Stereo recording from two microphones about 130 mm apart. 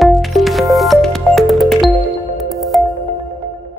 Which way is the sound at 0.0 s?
Centre (ahead or behind).